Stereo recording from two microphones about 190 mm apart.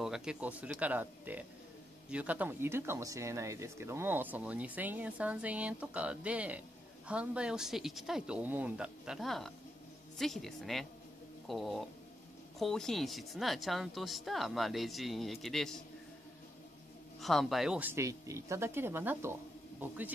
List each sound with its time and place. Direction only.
0.0 s speech: 5° right (ahead or behind)
17.2 s speech: centre (ahead or behind)